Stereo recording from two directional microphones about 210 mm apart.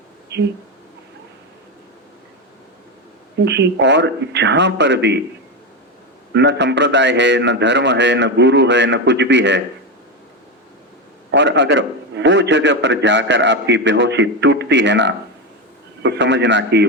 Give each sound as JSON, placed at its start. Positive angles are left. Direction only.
{"t": 3.4, "sound": "a man's voice", "side_deg": -55}
{"t": 6.3, "sound": "a man's voice", "side_deg": -55}
{"t": 11.3, "sound": "a man's voice", "side_deg": -55}